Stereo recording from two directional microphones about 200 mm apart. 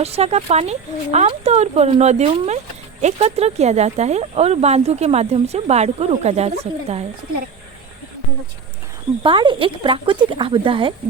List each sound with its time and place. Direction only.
0.0 s speech: 30° right (ahead or behind)
9.2 s speech: 25° right (ahead or behind)